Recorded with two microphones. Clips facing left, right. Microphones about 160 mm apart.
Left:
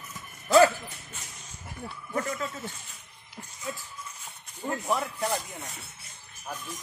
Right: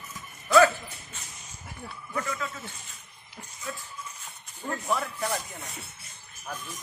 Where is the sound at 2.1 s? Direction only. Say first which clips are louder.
Left 1 dB; 35° left (ahead or behind).